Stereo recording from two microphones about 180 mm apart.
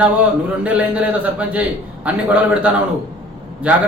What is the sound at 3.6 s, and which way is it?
Speech, 5° right (ahead or behind).